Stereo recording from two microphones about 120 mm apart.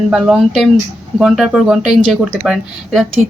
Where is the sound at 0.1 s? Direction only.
5° right (ahead or behind).